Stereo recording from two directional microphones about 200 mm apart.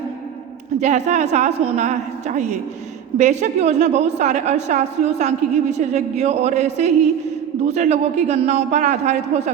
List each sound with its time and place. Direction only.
0.8 s a woman's voice: 35° right (ahead or behind)